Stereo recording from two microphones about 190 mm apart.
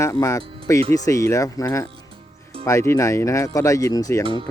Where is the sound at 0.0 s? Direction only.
15° left (ahead or behind).